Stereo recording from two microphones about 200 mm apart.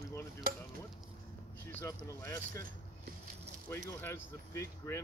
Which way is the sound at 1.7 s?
10° left (ahead or behind).